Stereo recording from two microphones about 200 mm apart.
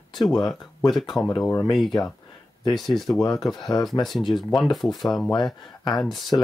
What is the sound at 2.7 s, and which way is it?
Speech, centre (ahead or behind).